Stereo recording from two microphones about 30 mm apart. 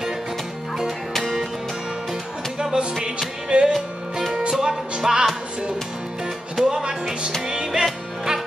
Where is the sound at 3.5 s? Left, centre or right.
Right.